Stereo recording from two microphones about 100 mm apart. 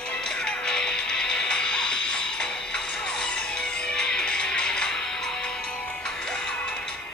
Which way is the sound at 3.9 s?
5° left (ahead or behind).